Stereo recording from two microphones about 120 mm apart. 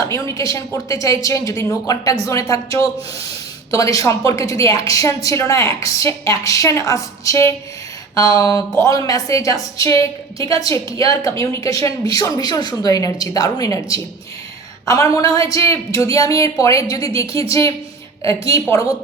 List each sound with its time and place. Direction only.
0.0 s a woman's voice: 25° left (ahead or behind)